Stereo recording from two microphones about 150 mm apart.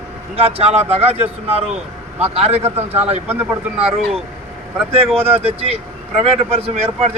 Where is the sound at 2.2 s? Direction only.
45° right (ahead or behind).